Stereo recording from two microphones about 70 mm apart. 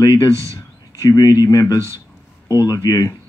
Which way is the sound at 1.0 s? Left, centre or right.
Left.